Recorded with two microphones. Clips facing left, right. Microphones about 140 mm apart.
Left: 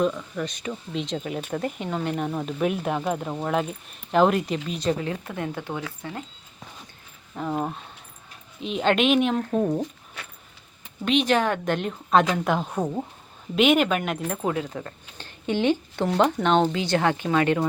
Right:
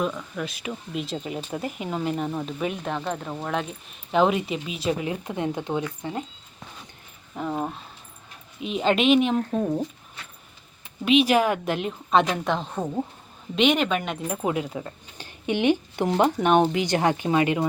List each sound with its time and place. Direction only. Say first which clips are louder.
0.0 s speech: left 3 dB; centre (ahead or behind)
5.0 s speech: right 2 dB; 20° right (ahead or behind)
7.3 s speech: left 1 dB; 5° left (ahead or behind)
11.0 s speech: right 2 dB; 5° right (ahead or behind)
14.4 s speech: right 2 dB; 15° right (ahead or behind)